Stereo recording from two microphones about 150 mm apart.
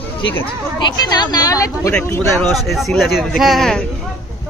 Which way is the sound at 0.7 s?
25° left (ahead or behind).